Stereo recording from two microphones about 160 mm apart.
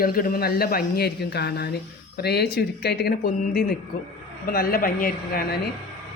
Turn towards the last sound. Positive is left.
turn(degrees=65)  # may be behind; listen again after turning